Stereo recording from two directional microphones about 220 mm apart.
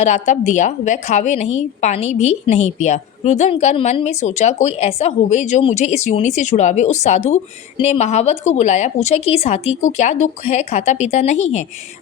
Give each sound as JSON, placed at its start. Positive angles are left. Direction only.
{"t": 0.0, "sound": "a woman's voice", "side_deg": 30}